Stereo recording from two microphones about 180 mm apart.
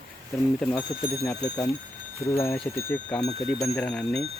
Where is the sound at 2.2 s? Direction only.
15° left (ahead or behind).